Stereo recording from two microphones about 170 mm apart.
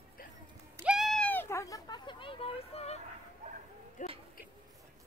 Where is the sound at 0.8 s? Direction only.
Centre (ahead or behind); by 3.0 s 35° left (ahead or behind).